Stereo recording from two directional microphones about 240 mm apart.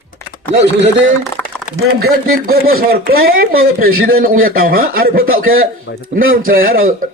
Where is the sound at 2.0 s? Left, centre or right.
Right.